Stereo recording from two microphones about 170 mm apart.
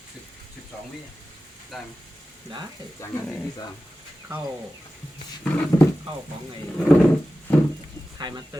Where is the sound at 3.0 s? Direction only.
15° left (ahead or behind).